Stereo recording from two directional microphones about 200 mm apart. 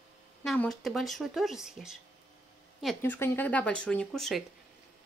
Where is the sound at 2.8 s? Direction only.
10° left (ahead or behind).